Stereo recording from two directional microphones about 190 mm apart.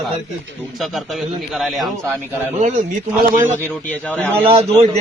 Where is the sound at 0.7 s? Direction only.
Centre (ahead or behind).